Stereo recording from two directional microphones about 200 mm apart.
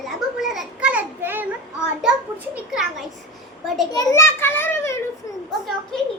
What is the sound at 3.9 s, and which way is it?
A child's voice, 15° left (ahead or behind).